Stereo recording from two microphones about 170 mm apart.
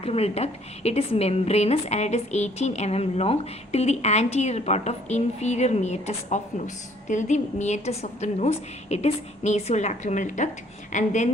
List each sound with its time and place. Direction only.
0.0 s a woman's voice: 35° left (ahead or behind)